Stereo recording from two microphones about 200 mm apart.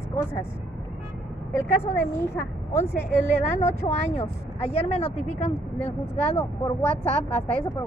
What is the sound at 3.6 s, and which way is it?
Speech, 35° left (ahead or behind).